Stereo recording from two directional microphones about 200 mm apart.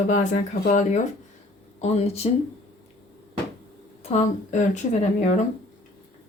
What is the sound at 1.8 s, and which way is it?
Speech, 30° left (ahead or behind).